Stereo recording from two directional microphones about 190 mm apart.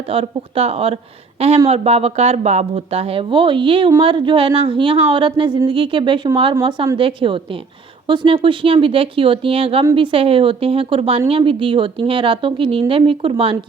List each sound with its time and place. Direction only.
0.1 s a woman's voice: 30° right (ahead or behind)